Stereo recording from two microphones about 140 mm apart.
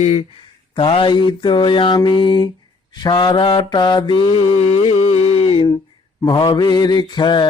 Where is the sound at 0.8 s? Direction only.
35° left (ahead or behind).